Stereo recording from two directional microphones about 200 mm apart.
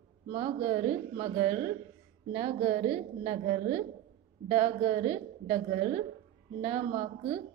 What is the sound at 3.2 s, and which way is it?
Speech, 40° right (ahead or behind).